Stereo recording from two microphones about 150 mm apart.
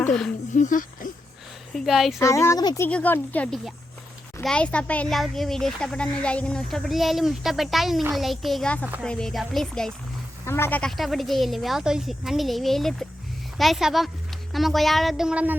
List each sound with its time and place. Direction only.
0.5 s speech: 60° left (ahead or behind)
1.7 s speech: centre (ahead or behind)
2.1 s speech: 20° left (ahead or behind)
2.8 s speech: 10° left (ahead or behind)
10.4 s speech: 15° left (ahead or behind)
10.9 s speech: centre (ahead or behind)